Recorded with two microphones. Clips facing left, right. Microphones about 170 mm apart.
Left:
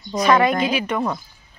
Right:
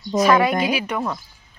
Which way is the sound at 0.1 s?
5° right (ahead or behind).